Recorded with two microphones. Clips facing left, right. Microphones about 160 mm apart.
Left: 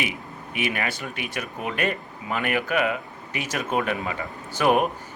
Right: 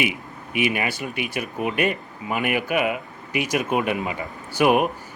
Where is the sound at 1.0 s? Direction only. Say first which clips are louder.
Right 4 dB; 5° right (ahead or behind).